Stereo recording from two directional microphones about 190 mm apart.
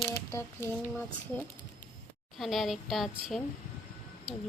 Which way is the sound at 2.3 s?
Centre (ahead or behind).